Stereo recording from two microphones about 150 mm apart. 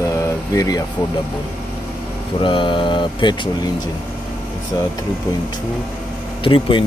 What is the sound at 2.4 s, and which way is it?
Speech, 35° left (ahead or behind).